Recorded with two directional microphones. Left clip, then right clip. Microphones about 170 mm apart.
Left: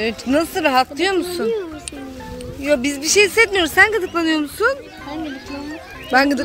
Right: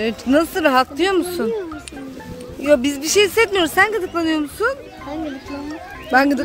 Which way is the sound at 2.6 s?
35° right (ahead or behind).